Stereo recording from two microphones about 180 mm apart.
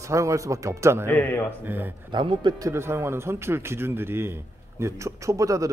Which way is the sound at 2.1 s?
25° right (ahead or behind).